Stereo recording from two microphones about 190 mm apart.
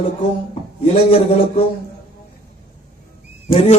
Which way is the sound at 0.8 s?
35° left (ahead or behind).